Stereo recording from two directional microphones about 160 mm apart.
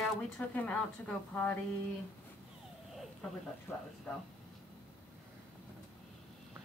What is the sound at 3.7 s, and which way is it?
Speech, 15° left (ahead or behind).